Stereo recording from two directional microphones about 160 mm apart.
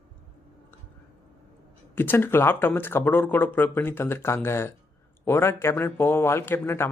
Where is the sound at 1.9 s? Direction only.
15° left (ahead or behind).